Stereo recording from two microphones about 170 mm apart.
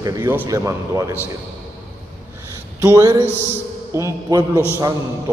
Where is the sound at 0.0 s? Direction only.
15° right (ahead or behind).